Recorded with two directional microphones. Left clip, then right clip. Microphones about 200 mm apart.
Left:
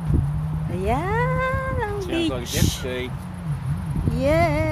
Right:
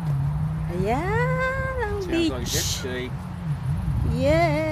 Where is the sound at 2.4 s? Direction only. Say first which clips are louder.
Left 1 dB; centre (ahead or behind).